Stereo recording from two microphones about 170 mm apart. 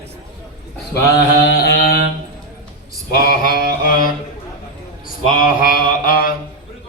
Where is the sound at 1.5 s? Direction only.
70° left (ahead or behind).